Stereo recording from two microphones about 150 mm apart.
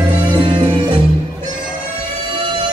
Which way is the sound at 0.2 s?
30° right (ahead or behind).